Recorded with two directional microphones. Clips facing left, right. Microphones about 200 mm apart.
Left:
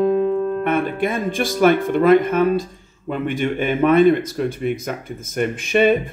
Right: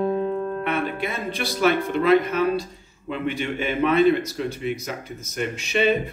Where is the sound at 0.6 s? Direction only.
50° left (ahead or behind).